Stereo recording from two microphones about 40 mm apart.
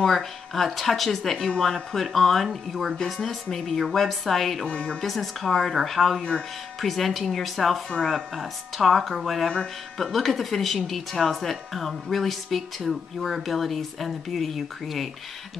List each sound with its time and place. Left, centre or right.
0.0 s speech: centre
4.6 s speech: left
5.0 s speech: centre